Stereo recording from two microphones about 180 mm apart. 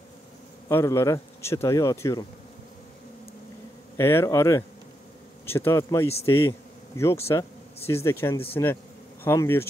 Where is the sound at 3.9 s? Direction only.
15° left (ahead or behind).